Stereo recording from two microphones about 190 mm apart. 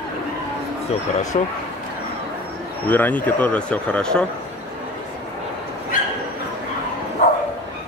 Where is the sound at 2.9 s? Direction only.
10° left (ahead or behind).